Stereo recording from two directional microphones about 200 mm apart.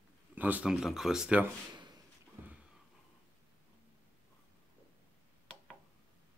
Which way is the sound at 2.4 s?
10° right (ahead or behind).